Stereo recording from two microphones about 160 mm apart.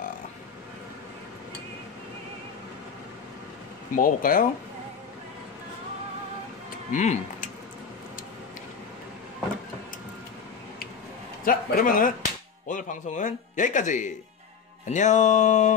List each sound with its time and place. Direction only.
3.9 s a man's voice: 60° left (ahead or behind)
6.9 s speech: 50° left (ahead or behind)
11.4 s a man's voice: 65° left (ahead or behind); by 15.7 s 45° left (ahead or behind)